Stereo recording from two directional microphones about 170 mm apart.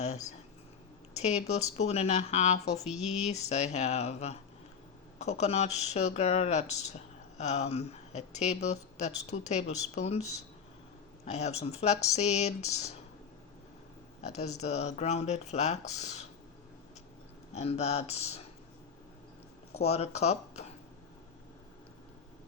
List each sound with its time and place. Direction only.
0.0 s a sound: 40° left (ahead or behind)
1.1 s a woman's voice: 40° left (ahead or behind)
2.8 s speech: 5° right (ahead or behind)
3.5 s a woman's voice: 40° left (ahead or behind)
14.2 s a woman's voice: 40° left (ahead or behind)
17.5 s a woman's voice: 40° left (ahead or behind)
19.7 s a woman's voice: 35° left (ahead or behind)